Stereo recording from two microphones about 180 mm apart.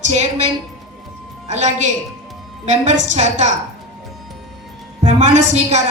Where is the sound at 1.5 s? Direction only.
40° right (ahead or behind).